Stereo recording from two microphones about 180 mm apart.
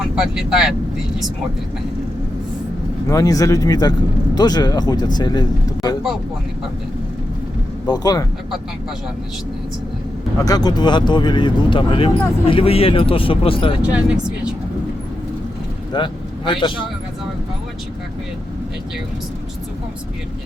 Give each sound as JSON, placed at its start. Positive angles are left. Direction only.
{"t": 0.3, "sound": "speech", "side_deg": 0}
{"t": 3.1, "sound": "speech", "side_deg": 20}
{"t": 7.9, "sound": "speech", "side_deg": 20}
{"t": 10.4, "sound": "speech", "side_deg": 20}
{"t": 13.8, "sound": "speech", "side_deg": -5}
{"t": 15.9, "sound": "speech", "side_deg": 25}